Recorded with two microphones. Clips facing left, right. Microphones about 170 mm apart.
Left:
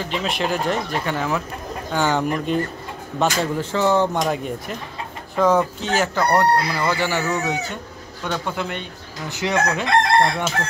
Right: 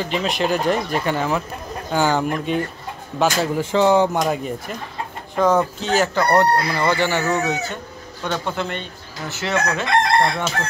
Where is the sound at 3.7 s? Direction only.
15° right (ahead or behind); by 5.6 s 5° left (ahead or behind).